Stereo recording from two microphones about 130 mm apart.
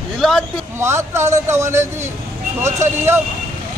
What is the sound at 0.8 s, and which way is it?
Speech, 20° right (ahead or behind).